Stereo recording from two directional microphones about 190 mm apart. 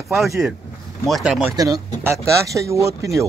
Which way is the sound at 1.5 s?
20° right (ahead or behind).